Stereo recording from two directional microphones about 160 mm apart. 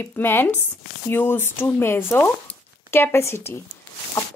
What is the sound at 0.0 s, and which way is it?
A woman's voice, 15° left (ahead or behind).